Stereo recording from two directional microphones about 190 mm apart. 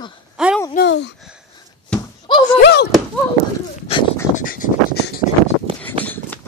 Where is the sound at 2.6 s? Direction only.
60° left (ahead or behind).